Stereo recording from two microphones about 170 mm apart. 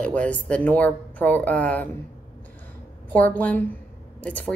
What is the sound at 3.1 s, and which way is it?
Speech, 10° left (ahead or behind).